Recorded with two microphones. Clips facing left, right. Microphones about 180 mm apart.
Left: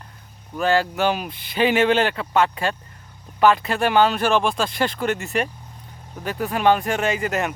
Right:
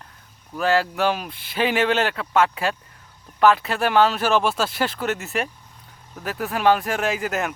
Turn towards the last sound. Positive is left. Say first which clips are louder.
# left 1 dB
turn(degrees=0)  # may be behind; listen again after turning